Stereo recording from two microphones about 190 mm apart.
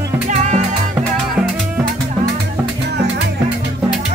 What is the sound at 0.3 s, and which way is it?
Music, 40° right (ahead or behind).